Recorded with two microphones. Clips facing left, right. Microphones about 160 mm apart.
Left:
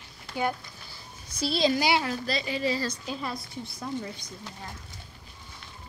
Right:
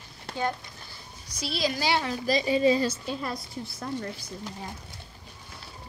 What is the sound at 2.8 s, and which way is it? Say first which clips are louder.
Speech: right 3 dB; centre (ahead or behind).